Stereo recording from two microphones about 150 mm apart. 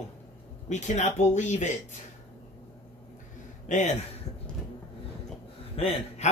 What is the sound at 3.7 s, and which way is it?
Speech, 50° left (ahead or behind).